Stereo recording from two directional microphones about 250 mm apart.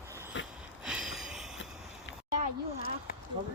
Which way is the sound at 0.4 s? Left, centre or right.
Left.